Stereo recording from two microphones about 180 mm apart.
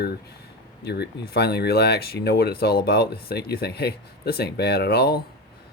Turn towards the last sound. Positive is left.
turn(degrees=60)  # may be behind; listen again after turning